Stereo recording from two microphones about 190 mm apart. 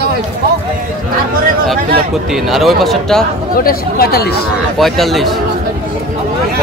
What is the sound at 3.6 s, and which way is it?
Speech, 50° left (ahead or behind).